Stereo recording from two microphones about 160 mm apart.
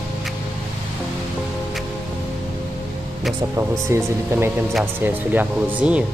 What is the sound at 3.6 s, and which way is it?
Speech, 15° right (ahead or behind).